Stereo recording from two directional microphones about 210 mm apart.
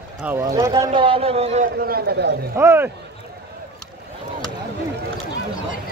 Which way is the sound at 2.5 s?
10° right (ahead or behind).